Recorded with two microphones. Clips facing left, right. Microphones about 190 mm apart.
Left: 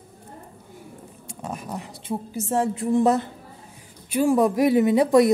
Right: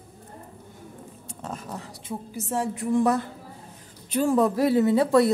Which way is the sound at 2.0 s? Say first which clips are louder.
Left 5 dB; 25° left (ahead or behind).